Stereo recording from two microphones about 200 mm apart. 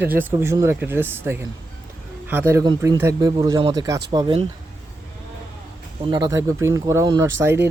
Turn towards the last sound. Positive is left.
turn(degrees=-10)  # may be behind; listen again after turning